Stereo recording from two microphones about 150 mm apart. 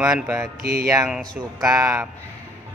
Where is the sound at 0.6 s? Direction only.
90° right.